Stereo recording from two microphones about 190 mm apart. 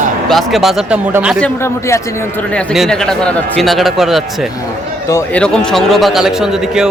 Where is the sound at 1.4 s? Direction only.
15° left (ahead or behind).